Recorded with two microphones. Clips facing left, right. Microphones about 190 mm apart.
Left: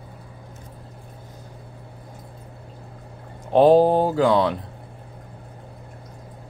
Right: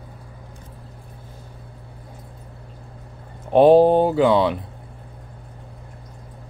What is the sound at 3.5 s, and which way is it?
Speech, 5° right (ahead or behind).